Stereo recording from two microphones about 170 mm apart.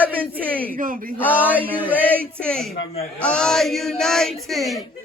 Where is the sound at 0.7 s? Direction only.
55° right (ahead or behind).